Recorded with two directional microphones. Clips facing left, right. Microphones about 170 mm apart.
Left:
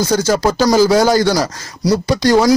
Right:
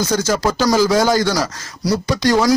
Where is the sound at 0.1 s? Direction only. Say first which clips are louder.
Left 3 dB; 35° left (ahead or behind).